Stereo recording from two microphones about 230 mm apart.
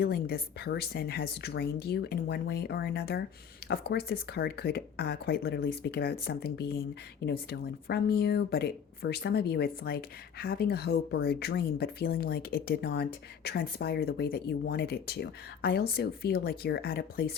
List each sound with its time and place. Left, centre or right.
0.0 s speech: left